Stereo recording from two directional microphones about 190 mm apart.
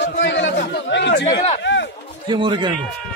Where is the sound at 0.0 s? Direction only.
70° left (ahead or behind).